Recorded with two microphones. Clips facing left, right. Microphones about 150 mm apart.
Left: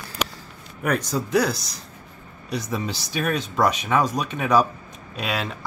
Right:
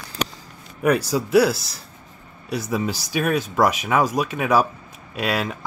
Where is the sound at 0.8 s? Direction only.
10° right (ahead or behind).